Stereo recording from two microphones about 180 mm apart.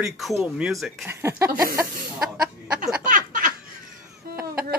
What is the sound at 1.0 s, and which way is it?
Speech, 15° right (ahead or behind).